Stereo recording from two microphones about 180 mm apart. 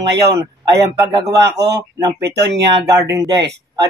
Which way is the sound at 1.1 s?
25° right (ahead or behind).